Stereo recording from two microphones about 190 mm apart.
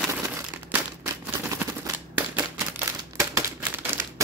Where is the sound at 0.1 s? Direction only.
10° right (ahead or behind).